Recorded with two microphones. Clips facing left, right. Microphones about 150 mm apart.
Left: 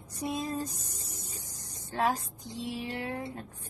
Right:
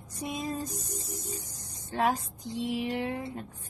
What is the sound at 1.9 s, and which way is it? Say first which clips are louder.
Speech: right 1 dB; 15° right (ahead or behind).